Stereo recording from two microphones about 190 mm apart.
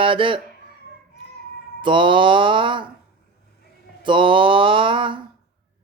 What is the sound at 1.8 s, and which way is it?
Mantra, 25° right (ahead or behind).